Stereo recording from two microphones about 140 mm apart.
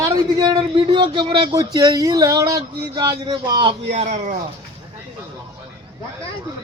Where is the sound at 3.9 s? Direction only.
55° right (ahead or behind).